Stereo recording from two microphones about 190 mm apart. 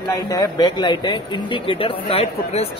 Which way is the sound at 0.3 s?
20° left (ahead or behind).